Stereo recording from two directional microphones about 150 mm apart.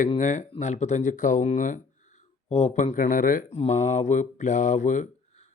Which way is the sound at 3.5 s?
45° left (ahead or behind).